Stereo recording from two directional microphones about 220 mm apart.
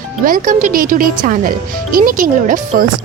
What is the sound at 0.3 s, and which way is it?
Speech, 40° right (ahead or behind).